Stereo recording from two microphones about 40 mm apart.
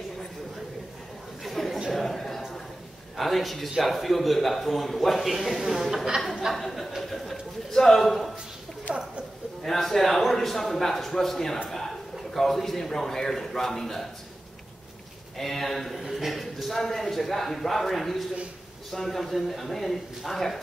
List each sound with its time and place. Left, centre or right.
1.4 s a sound: centre
3.2 s a man's voice: centre
9.6 s a man's voice: centre
15.3 s a man's voice: centre